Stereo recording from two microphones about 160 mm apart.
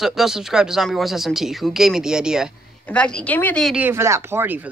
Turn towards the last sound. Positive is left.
turn(degrees=-10)  # may be behind; listen again after turning